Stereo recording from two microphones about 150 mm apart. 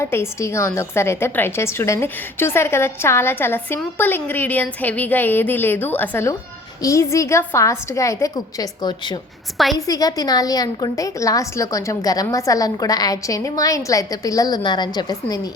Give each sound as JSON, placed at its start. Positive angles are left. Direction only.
{"t": 0.0, "sound": "a woman's voice", "side_deg": 15}